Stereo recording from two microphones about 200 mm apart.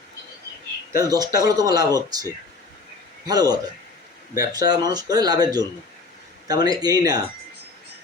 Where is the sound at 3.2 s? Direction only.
20° right (ahead or behind).